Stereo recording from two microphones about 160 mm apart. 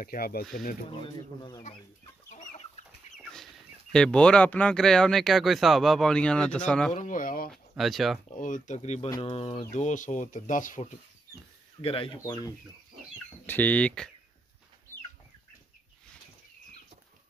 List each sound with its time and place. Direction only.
0.0 s speech: 65° left (ahead or behind)
2.3 s chicken: 50° left (ahead or behind)
3.9 s speech: 5° left (ahead or behind)
6.9 s speech: 50° left (ahead or behind)
7.5 s speech: centre (ahead or behind)
8.3 s speech: 55° left (ahead or behind)
11.8 s speech: 35° left (ahead or behind)
13.5 s speech: 10° left (ahead or behind)